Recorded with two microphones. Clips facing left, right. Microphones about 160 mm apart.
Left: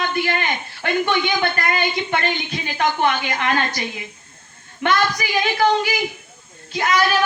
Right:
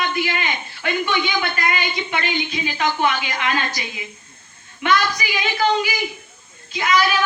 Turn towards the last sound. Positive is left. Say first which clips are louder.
# even
turn(degrees=50)  # may be behind; listen again after turning